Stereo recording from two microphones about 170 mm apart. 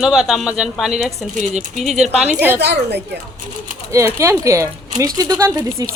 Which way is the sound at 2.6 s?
75° right (ahead or behind).